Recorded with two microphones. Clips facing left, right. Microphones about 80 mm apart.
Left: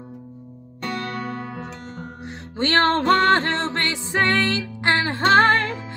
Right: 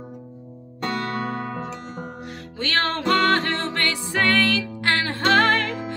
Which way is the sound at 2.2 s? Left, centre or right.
Left.